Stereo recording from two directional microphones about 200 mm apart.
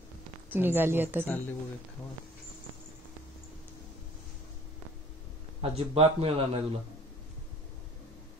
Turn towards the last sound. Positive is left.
turn(degrees=-30)  # may be behind; listen again after turning